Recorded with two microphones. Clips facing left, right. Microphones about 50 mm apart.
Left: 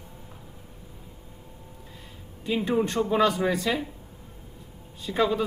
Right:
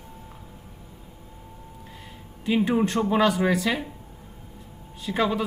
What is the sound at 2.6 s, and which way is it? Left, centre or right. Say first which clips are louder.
A man's voice: right 1 dB; centre.